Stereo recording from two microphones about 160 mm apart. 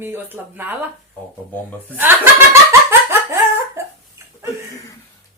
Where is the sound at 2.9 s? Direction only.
15° right (ahead or behind).